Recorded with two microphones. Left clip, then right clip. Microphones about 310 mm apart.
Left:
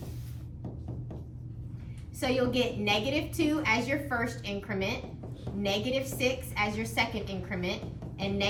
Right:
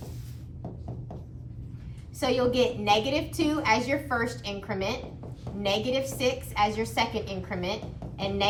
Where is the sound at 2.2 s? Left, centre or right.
Centre.